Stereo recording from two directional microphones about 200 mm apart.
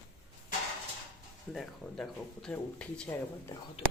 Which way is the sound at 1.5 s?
Centre (ahead or behind).